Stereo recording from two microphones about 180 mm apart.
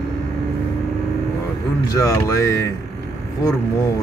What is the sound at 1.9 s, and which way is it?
Speech, 20° left (ahead or behind).